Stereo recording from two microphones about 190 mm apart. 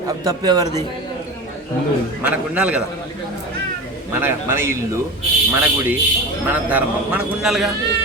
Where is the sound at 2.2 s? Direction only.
5° right (ahead or behind).